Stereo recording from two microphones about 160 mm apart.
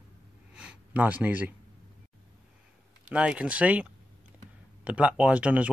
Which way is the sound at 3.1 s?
5° right (ahead or behind).